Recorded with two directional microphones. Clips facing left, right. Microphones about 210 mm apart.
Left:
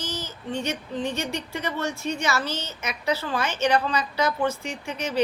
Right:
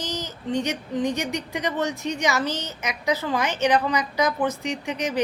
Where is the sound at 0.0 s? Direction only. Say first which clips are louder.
Right 3 dB; 15° right (ahead or behind).